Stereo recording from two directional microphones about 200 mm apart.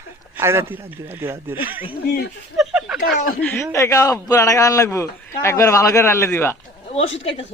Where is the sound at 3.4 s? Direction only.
15° left (ahead or behind).